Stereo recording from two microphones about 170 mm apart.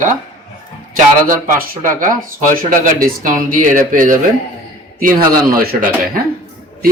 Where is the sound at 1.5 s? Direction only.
55° right (ahead or behind).